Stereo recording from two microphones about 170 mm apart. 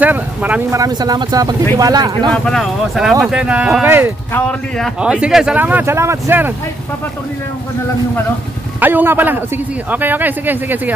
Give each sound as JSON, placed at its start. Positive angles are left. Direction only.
{"t": 0.0, "sound": "speech", "side_deg": -10}
{"t": 2.3, "sound": "a man's voice", "side_deg": 5}
{"t": 4.3, "sound": "a man's voice", "side_deg": 5}
{"t": 8.7, "sound": "a man's voice", "side_deg": -10}